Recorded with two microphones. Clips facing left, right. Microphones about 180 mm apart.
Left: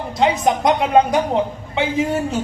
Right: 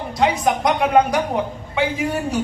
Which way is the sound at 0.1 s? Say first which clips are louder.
Left 2 dB; 25° left (ahead or behind).